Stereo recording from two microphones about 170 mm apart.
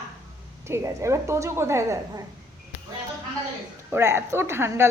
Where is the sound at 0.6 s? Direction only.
15° right (ahead or behind).